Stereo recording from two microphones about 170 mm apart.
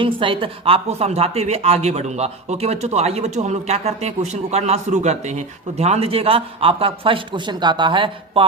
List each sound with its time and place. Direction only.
0.0 s a woman's voice: 30° right (ahead or behind)